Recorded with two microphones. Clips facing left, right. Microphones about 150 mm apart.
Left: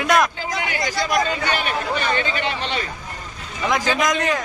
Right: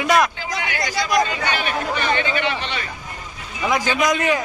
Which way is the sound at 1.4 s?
40° left (ahead or behind).